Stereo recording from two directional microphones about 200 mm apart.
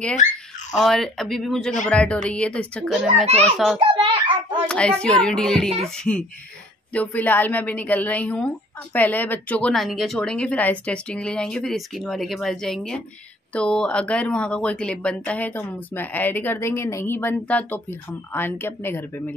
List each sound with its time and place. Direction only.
0.7 s a child's voice: centre (ahead or behind)
3.8 s a sound: 25° right (ahead or behind)
4.6 s a child's voice: 5° left (ahead or behind)